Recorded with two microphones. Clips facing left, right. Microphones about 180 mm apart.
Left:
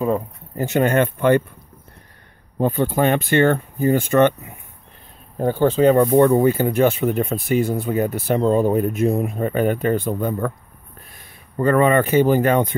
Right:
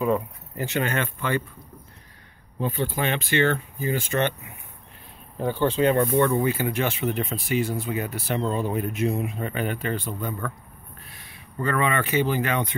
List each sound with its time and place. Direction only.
0.0 s speech: 40° left (ahead or behind)
2.6 s speech: 50° left (ahead or behind)
5.4 s speech: 45° left (ahead or behind)